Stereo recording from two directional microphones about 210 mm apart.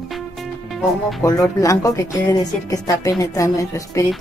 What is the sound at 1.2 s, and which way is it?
Speech, 15° left (ahead or behind).